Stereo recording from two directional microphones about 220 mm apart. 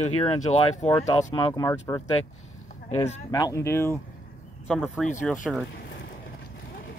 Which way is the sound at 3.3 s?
15° left (ahead or behind).